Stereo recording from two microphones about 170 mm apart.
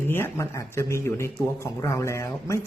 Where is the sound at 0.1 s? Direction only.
15° left (ahead or behind).